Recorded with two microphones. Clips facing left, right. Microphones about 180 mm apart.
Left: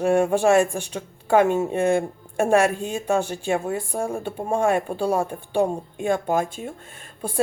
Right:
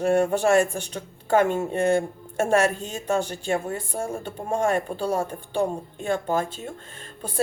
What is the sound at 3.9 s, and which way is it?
Speech, 35° left (ahead or behind).